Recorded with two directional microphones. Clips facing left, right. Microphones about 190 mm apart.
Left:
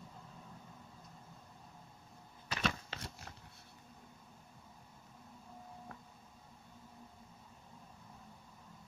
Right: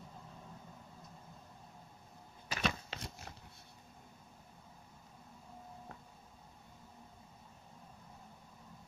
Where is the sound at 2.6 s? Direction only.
15° right (ahead or behind).